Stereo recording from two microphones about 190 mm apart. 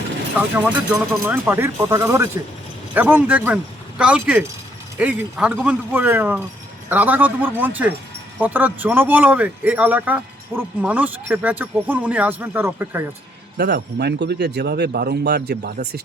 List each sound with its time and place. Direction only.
0.3 s speech: 5° right (ahead or behind)
13.6 s speech: 60° right (ahead or behind)